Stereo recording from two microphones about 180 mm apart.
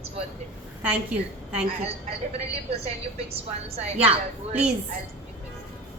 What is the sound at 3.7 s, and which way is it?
Speech, 35° right (ahead or behind).